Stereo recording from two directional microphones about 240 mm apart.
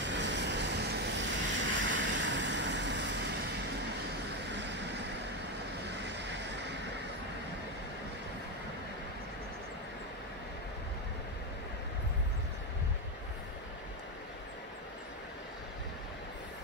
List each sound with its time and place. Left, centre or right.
0.0 s vehicle: right
5.9 s vehicle: right